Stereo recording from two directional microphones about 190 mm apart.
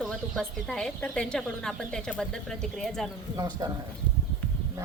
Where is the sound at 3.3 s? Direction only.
20° right (ahead or behind).